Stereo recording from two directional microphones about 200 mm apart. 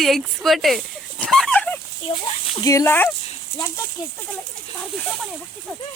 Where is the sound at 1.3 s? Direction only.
5° left (ahead or behind).